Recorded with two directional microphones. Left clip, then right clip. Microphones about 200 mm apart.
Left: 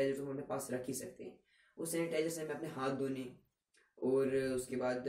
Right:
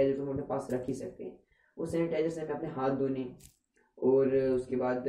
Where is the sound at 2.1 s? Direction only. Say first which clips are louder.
Right 5 dB; 15° left (ahead or behind).